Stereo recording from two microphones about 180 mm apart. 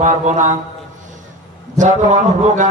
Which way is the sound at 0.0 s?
40° right (ahead or behind).